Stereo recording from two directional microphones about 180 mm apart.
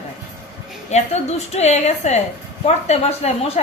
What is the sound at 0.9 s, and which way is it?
A woman's voice, 35° left (ahead or behind).